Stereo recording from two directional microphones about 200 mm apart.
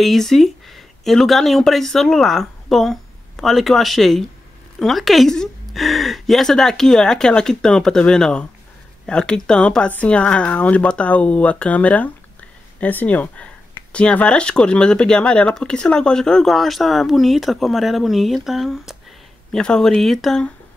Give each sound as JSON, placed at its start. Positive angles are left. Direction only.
{"t": 0.0, "sound": "speech", "side_deg": 0}